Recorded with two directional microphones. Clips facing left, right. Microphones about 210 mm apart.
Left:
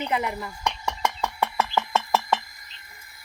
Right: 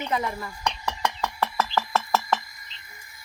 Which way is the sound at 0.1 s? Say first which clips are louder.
Left 1 dB; 10° left (ahead or behind).